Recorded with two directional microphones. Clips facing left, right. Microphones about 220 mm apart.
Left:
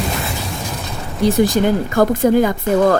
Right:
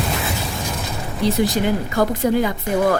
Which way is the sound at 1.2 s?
45° left (ahead or behind).